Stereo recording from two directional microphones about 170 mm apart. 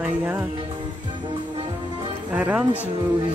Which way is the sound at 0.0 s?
10° right (ahead or behind).